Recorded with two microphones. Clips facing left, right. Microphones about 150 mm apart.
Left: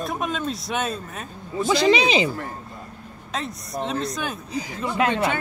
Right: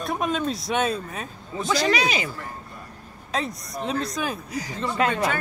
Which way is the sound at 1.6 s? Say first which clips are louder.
Left 4 dB; 20° left (ahead or behind).